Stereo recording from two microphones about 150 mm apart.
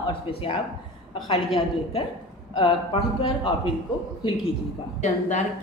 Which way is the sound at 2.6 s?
35° left (ahead or behind).